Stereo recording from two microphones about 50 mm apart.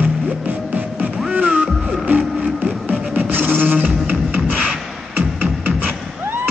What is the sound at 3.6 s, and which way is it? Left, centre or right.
Beatboxing, right.